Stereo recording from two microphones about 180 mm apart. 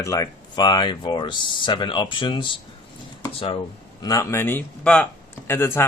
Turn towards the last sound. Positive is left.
turn(degrees=15)  # may be behind; listen again after turning